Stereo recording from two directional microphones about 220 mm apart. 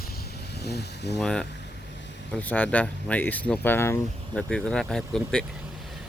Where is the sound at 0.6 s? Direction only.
50° left (ahead or behind).